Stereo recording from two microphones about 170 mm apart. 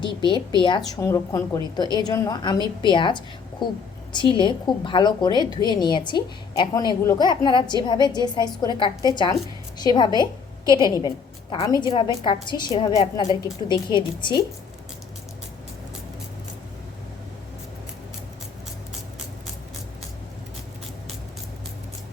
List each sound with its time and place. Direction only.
0.0 s a woman's voice: 30° left (ahead or behind)